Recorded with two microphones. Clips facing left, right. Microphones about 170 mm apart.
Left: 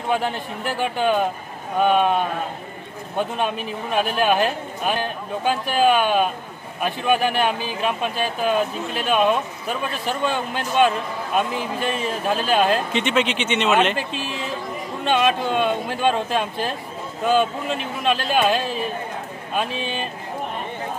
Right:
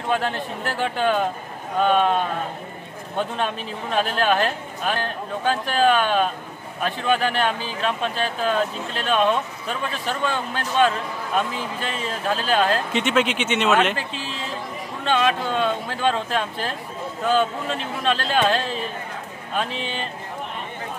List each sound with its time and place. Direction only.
0.1 s speech: 15° left (ahead or behind)
12.9 s speech: 5° right (ahead or behind)
13.9 s speech: 15° left (ahead or behind)